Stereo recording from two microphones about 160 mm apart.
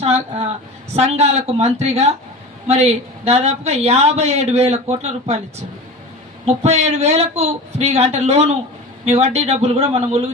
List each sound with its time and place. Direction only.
0.0 s speech: 40° right (ahead or behind)
6.4 s speech: 40° right (ahead or behind)